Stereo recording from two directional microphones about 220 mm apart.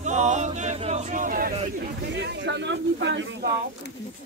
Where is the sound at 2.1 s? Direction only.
50° right (ahead or behind).